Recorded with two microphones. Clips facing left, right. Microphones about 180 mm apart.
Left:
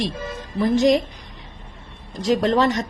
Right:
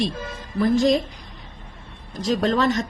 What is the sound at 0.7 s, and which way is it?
Mantra, 15° left (ahead or behind).